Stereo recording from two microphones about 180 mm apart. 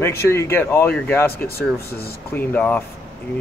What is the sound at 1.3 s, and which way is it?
Speech, 60° left (ahead or behind).